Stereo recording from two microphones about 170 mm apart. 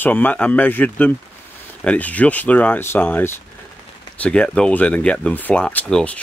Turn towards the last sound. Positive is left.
turn(degrees=5)  # may be behind; listen again after turning